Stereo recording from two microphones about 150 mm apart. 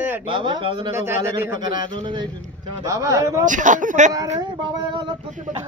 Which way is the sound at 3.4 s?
60° right (ahead or behind).